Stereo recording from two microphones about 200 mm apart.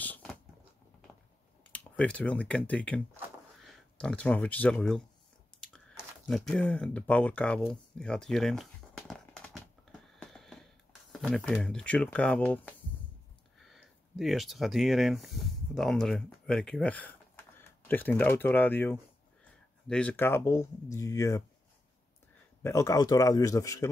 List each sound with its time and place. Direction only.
0.0 s a sound: 5° left (ahead or behind)
1.7 s speech: 5° left (ahead or behind)
5.6 s chewing: 5° left (ahead or behind)
13.6 s speech: centre (ahead or behind); by 21.4 s 15° left (ahead or behind)
22.6 s speech: 15° left (ahead or behind)